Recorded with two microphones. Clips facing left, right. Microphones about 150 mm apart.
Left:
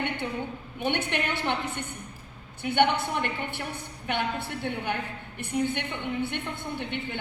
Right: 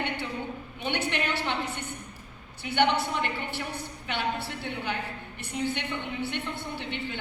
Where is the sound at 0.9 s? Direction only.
50° left (ahead or behind).